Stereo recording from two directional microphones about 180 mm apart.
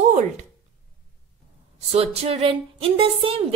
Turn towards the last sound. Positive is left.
turn(degrees=-30)  # may be behind; listen again after turning